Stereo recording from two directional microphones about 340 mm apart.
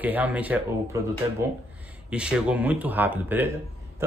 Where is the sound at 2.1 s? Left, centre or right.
Centre.